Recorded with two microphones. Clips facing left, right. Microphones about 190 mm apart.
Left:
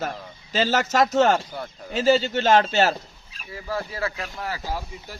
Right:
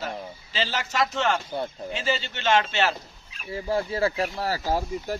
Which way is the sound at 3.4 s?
25° right (ahead or behind).